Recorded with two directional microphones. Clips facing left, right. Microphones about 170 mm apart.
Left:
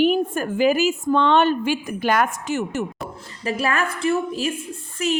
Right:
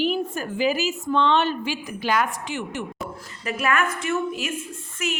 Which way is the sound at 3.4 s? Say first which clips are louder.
Left 1 dB; 30° left (ahead or behind).